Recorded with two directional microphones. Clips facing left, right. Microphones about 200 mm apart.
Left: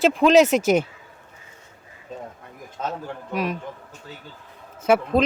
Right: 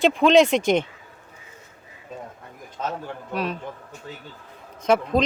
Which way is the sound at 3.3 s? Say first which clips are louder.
Left 2 dB; 10° left (ahead or behind).